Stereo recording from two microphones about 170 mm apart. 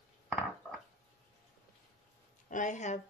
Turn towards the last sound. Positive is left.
turn(degrees=45)  # may be behind; listen again after turning